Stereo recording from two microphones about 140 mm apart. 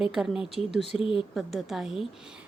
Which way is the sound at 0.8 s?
45° left (ahead or behind).